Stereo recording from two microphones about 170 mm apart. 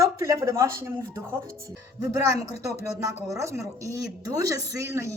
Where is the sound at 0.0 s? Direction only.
20° right (ahead or behind).